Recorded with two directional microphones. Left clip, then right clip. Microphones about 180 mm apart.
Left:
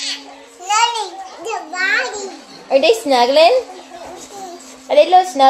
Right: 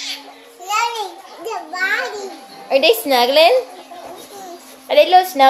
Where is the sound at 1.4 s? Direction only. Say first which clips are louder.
Left 1 dB; 20° right (ahead or behind).